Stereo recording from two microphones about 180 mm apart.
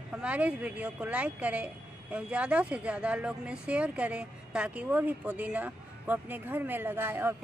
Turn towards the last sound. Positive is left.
turn(degrees=-10)  # may be behind; listen again after turning